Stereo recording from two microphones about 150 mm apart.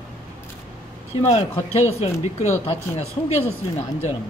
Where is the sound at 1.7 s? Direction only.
45° left (ahead or behind).